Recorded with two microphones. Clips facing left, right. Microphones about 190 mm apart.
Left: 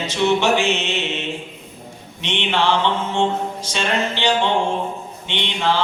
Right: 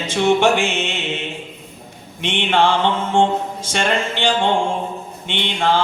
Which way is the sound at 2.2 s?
50° right (ahead or behind).